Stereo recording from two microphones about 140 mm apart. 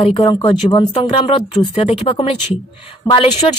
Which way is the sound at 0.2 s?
30° left (ahead or behind).